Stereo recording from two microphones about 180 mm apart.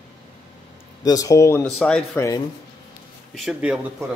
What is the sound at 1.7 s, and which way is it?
Speech, 5° left (ahead or behind).